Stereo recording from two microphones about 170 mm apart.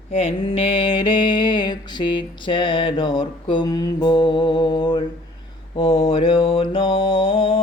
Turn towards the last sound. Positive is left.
turn(degrees=30)  # may be behind; listen again after turning